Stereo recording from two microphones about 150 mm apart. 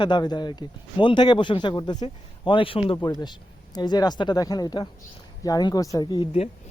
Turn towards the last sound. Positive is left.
turn(degrees=30)  # may be behind; listen again after turning